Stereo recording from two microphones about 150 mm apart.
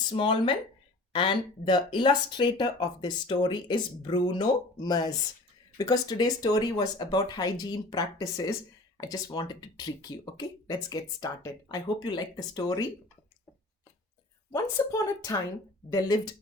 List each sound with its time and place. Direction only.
0.2 s speech: 35° left (ahead or behind)
14.5 s speech: 25° left (ahead or behind)